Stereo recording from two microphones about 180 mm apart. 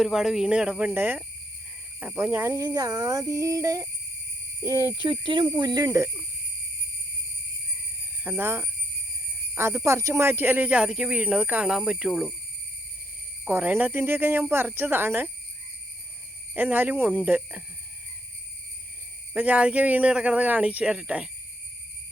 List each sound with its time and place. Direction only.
0.0 s speech: centre (ahead or behind)
5.2 s speech: 25° right (ahead or behind)
8.2 s speech: 10° right (ahead or behind)
13.4 s speech: 10° right (ahead or behind)
16.6 s speech: 10° right (ahead or behind)
19.3 s speech: 10° right (ahead or behind)